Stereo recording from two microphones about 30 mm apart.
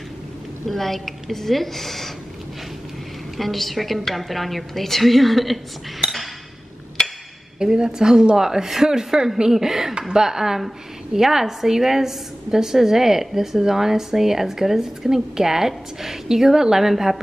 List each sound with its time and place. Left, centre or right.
0.7 s a woman's voice: centre
3.3 s a woman's voice: centre
7.0 s a sound: centre
7.5 s a woman's voice: right